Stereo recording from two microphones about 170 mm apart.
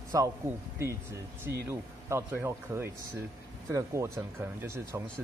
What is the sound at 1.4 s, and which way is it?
Speech, 15° right (ahead or behind).